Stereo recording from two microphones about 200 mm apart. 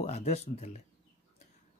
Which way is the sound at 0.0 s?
35° left (ahead or behind).